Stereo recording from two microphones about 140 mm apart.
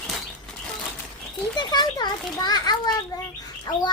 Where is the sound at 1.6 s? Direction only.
30° left (ahead or behind).